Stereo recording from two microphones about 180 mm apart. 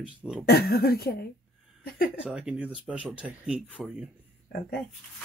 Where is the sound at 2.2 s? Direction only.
5° right (ahead or behind).